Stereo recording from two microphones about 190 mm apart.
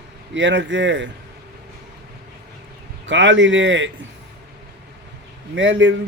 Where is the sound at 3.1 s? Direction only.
70° right (ahead or behind).